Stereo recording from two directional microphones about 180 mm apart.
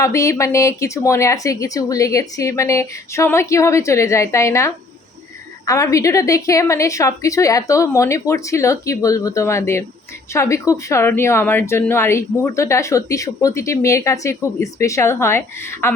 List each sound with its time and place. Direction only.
0.0 s a woman's voice: 15° left (ahead or behind)